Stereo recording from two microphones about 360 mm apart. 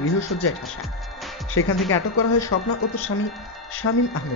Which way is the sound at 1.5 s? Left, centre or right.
Left.